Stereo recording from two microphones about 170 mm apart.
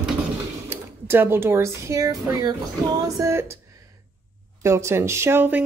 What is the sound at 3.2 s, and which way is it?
Speech, 15° right (ahead or behind).